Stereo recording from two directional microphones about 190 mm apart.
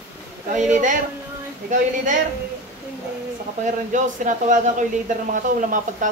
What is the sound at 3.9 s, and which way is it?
Speech, 40° right (ahead or behind).